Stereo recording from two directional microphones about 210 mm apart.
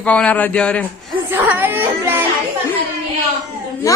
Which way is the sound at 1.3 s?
10° right (ahead or behind).